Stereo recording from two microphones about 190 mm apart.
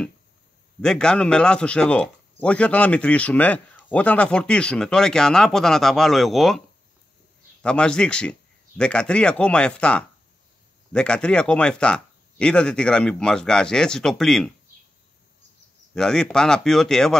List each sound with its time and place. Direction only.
0.7 s a man's voice: 5° left (ahead or behind)
7.6 s a man's voice: 5° left (ahead or behind)
15.9 s a man's voice: 5° left (ahead or behind)